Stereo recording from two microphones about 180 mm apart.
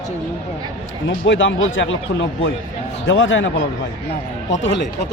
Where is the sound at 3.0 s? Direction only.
90° left.